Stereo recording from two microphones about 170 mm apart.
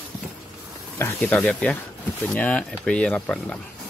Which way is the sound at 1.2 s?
5° left (ahead or behind).